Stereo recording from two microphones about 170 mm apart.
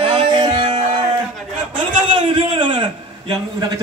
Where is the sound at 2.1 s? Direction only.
30° right (ahead or behind).